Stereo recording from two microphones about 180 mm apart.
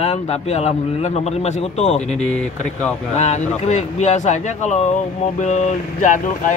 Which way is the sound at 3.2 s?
35° left (ahead or behind).